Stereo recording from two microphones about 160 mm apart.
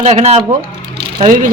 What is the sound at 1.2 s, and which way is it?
Speech, 55° right (ahead or behind).